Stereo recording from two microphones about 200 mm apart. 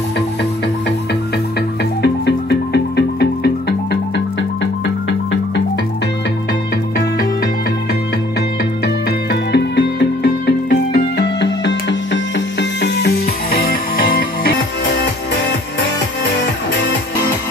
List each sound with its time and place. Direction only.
2.0 s music: 55° left (ahead or behind)
8.8 s music: 55° left (ahead or behind)